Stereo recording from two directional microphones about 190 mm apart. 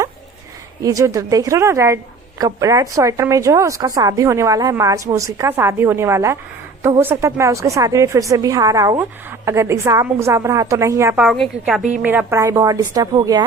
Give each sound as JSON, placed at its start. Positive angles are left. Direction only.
{"t": 0.8, "sound": "a woman's voice", "side_deg": -15}